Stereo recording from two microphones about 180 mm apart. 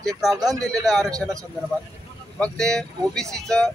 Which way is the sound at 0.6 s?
Centre (ahead or behind).